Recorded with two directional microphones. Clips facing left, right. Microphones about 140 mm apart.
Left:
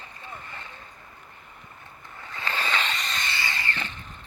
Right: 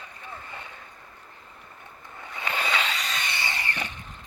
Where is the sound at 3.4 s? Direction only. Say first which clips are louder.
Even; 20° right (ahead or behind).